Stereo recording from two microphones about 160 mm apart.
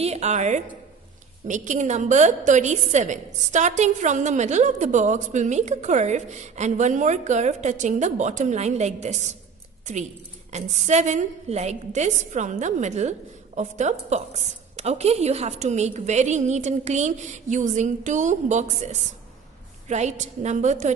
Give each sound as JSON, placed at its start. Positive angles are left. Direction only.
{"t": 0.0, "sound": "a woman's voice", "side_deg": -45}
{"t": 10.5, "sound": "a woman's voice", "side_deg": -45}